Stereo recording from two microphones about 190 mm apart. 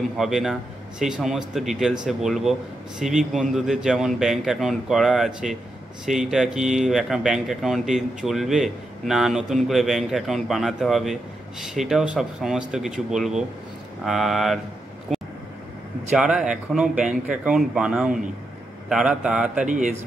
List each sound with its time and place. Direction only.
0.2 s speech: centre (ahead or behind)
15.1 s vehicle: centre (ahead or behind)
16.2 s speech: 5° right (ahead or behind)
19.6 s speech: 40° right (ahead or behind)